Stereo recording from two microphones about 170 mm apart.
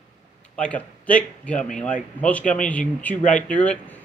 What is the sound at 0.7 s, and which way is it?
Speech, 10° left (ahead or behind).